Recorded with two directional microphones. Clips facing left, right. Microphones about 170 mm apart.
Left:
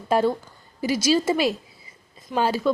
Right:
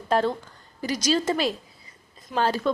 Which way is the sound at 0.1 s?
10° left (ahead or behind).